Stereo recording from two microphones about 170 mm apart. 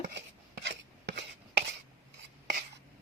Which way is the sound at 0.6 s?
90° right.